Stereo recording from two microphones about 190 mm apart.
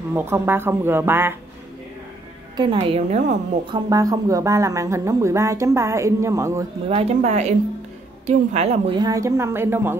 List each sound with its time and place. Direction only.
0.1 s speech: 10° right (ahead or behind)
2.5 s a woman's voice: 25° right (ahead or behind)
3.7 s speech: 20° right (ahead or behind)
6.9 s a woman's voice: 35° right (ahead or behind); by 9.9 s 10° right (ahead or behind)